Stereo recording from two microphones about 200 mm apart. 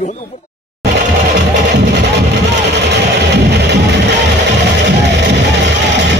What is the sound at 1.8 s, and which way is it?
Music, 60° right (ahead or behind).